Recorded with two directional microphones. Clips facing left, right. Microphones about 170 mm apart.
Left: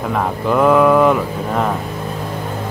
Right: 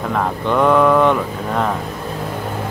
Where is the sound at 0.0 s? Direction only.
5° left (ahead or behind).